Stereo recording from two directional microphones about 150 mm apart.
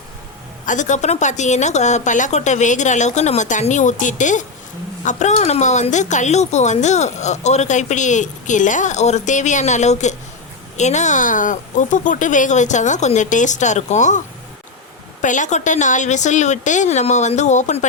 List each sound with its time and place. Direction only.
0.6 s speech: 55° left (ahead or behind)
15.2 s speech: 55° left (ahead or behind)